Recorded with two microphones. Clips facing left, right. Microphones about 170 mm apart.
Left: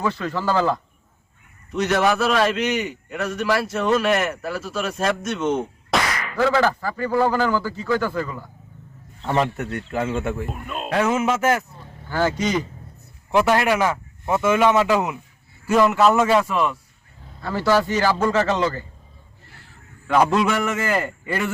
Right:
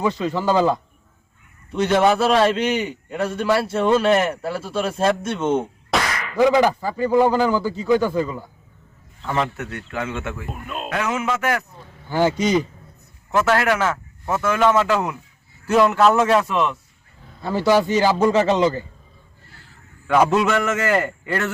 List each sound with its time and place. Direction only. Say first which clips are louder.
0.0 s speech: right 3 dB; 15° right (ahead or behind)
1.7 s a man's voice: right 3 dB; 30° right (ahead or behind)
5.9 s a sound: even; centre (ahead or behind)
6.3 s speech: right 4 dB; 15° right (ahead or behind)
10.0 s speech: left 4 dB; 35° left (ahead or behind)
10.4 s a man's voice: left 1 dB; centre (ahead or behind)
10.8 s speech: left 4 dB; 30° left (ahead or behind)
12.0 s speech: right 3 dB; 15° right (ahead or behind)
13.3 s a man's voice: left 1 dB; 15° left (ahead or behind)
15.7 s a man's voice: right 1 dB; centre (ahead or behind)
17.4 s speech: right 2 dB; 15° right (ahead or behind)
20.4 s a man's voice: right 2 dB; centre (ahead or behind)
21.2 s a man's voice: right 1 dB; 10° left (ahead or behind)